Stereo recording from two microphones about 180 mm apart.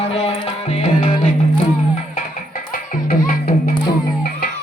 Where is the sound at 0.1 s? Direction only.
35° left (ahead or behind).